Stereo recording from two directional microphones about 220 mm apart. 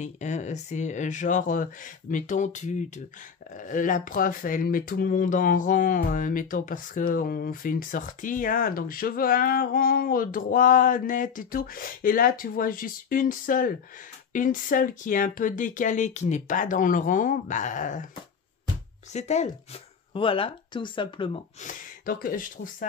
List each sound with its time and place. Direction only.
0.0 s speech: 30° left (ahead or behind)
19.1 s speech: 30° left (ahead or behind)